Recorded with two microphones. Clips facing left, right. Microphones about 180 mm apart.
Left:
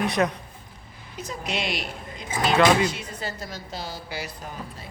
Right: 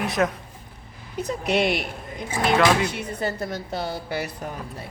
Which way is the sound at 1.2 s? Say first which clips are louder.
Right 8 dB; 60° right (ahead or behind).